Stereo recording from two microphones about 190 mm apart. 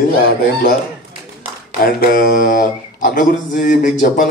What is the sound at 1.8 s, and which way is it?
Speech, 50° left (ahead or behind).